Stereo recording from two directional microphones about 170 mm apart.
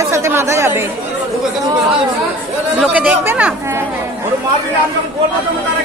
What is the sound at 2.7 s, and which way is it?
A woman's voice, 5° right (ahead or behind).